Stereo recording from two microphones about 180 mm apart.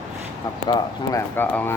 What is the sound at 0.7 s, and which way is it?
Speech, 20° left (ahead or behind).